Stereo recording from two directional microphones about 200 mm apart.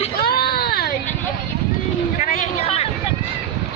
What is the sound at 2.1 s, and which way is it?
Speech, 35° left (ahead or behind).